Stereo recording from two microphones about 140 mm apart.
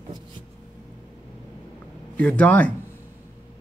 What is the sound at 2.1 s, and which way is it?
Speech, 10° left (ahead or behind).